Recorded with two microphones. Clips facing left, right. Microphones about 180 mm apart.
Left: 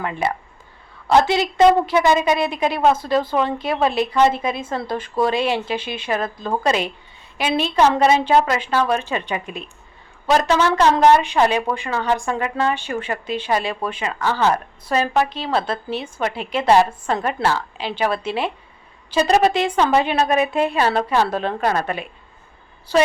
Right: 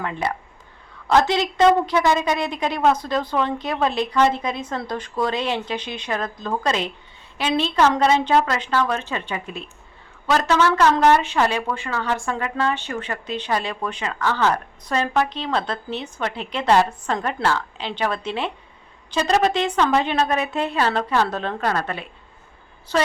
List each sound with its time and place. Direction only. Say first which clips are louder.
0.0 s a woman's voice: left 2 dB; 5° left (ahead or behind)